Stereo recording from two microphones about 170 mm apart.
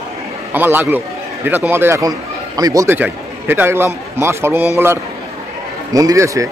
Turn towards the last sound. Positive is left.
turn(degrees=-20)  # may be behind; listen again after turning